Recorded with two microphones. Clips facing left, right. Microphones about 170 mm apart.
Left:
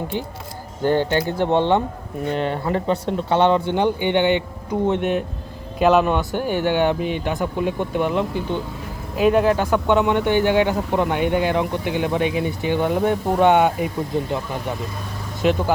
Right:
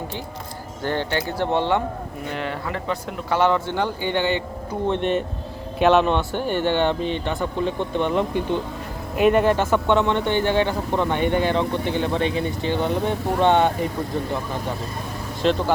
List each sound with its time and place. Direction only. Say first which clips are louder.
0.8 s speech: left 6 dB; 15° left (ahead or behind)
2.3 s speech: left 6 dB; 35° left (ahead or behind); by 5.0 s 15° left (ahead or behind)
5.8 s speech: left 1 dB; centre (ahead or behind)
15.4 s speech: left 1 dB; 10° left (ahead or behind)